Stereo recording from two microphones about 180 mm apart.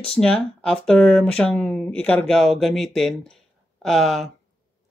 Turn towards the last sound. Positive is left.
turn(degrees=0)  # may be behind; listen again after turning